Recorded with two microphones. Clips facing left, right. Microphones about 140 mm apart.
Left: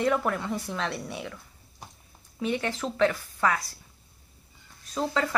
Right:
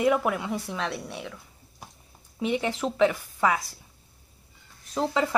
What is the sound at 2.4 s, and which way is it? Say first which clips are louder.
Speech: right 2 dB; 15° right (ahead or behind).